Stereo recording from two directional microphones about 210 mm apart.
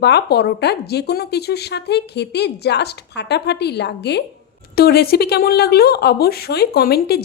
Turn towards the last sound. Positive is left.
turn(degrees=50)  # may be behind; listen again after turning